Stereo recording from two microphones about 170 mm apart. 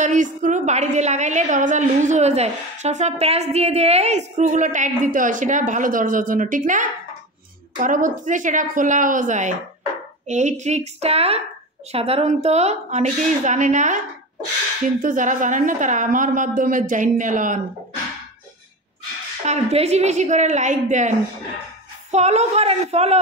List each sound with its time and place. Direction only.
0.0 s a woman's voice: 45° right (ahead or behind)
15.0 s a woman's voice: 50° right (ahead or behind)
19.4 s a woman's voice: 40° right (ahead or behind)
22.1 s a woman's voice: 40° right (ahead or behind)